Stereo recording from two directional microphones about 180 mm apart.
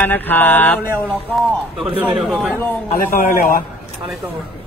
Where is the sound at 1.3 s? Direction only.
Centre (ahead or behind).